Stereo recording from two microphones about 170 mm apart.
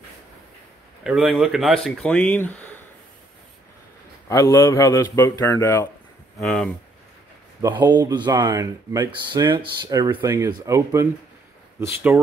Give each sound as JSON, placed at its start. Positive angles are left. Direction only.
{"t": 1.0, "sound": "speech", "side_deg": -5}
{"t": 4.3, "sound": "speech", "side_deg": 20}
{"t": 6.4, "sound": "speech", "side_deg": 5}
{"t": 7.6, "sound": "speech", "side_deg": -20}